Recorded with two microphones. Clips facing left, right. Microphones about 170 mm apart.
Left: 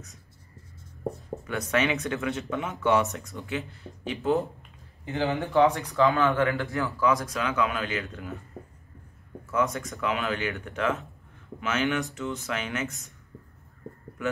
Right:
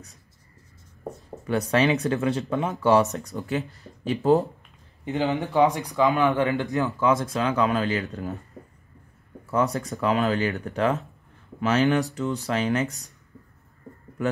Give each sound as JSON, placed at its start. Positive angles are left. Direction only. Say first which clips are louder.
{"t": 1.5, "sound": "speech", "louder": "right 5 dB", "side_deg": -35}
{"t": 5.0, "sound": "speech", "louder": "right 3 dB", "side_deg": -20}
{"t": 9.5, "sound": "speech", "louder": "right 3 dB", "side_deg": -35}